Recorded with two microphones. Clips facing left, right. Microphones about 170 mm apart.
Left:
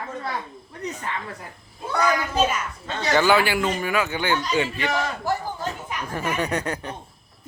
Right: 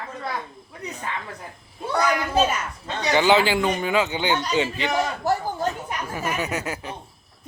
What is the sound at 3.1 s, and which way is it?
Speech, 20° right (ahead or behind).